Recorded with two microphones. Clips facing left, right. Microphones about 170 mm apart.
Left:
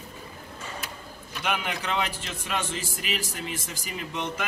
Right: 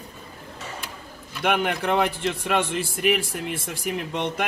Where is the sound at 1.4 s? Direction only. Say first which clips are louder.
Right 7 dB; 55° right (ahead or behind).